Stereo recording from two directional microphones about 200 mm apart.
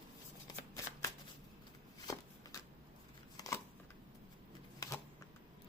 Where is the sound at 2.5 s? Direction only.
15° left (ahead or behind).